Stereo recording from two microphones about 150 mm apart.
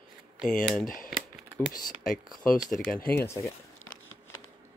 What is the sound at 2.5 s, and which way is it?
Speech, centre (ahead or behind).